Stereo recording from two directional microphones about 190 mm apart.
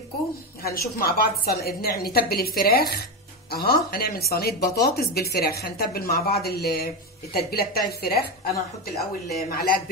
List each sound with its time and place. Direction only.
0.6 s a woman's voice: 55° left (ahead or behind)
9.5 s a woman's voice: 55° left (ahead or behind)